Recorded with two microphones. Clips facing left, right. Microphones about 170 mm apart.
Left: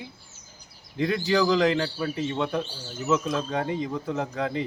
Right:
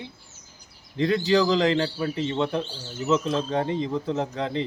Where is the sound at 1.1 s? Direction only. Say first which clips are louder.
Right 2 dB; 20° right (ahead or behind).